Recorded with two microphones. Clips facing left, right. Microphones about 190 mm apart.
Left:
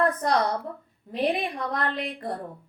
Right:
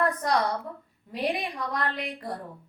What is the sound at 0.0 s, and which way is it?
A woman's voice, 25° left (ahead or behind).